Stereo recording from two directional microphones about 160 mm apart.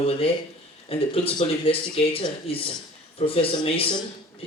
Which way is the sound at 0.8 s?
35° left (ahead or behind).